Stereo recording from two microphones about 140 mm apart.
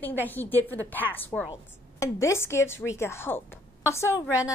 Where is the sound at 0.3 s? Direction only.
15° left (ahead or behind).